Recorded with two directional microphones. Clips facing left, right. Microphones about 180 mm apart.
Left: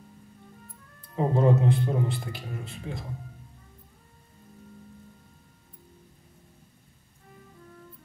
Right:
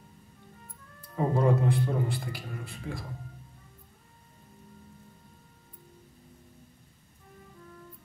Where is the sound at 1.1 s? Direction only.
25° left (ahead or behind).